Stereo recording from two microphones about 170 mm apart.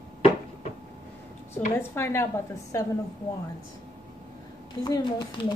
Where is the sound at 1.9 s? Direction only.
15° left (ahead or behind).